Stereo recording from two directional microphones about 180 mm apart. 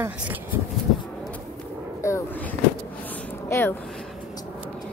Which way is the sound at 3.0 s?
10° left (ahead or behind).